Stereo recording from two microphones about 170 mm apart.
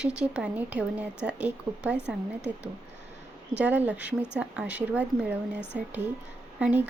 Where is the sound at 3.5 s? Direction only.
10° right (ahead or behind).